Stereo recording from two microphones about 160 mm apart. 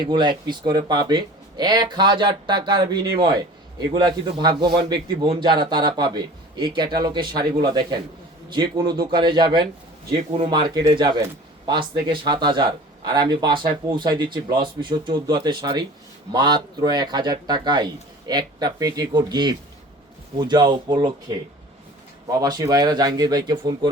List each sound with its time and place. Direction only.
0.0 s a man's voice: 30° right (ahead or behind)